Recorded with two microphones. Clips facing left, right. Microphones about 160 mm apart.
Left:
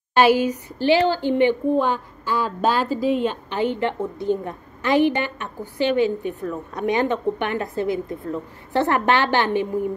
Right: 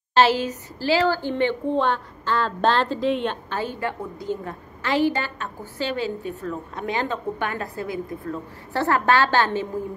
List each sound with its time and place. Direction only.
0.1 s a woman's voice: 15° left (ahead or behind)
3.5 s a woman's voice: 20° left (ahead or behind)